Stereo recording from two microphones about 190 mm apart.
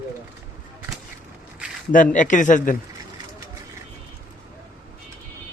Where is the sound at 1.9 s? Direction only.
45° left (ahead or behind).